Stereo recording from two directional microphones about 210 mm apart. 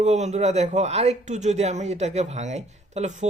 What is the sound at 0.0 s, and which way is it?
Speech, 35° right (ahead or behind).